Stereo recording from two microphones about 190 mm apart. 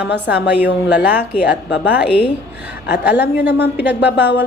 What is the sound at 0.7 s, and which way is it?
Speech, 65° left (ahead or behind).